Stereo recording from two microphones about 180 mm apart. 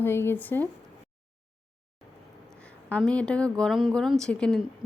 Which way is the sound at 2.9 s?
5° left (ahead or behind).